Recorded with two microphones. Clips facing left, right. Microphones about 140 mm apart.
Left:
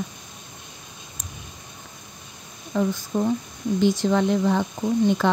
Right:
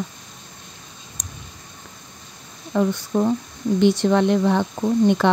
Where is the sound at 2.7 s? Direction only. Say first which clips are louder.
Right 3 dB; 65° right (ahead or behind).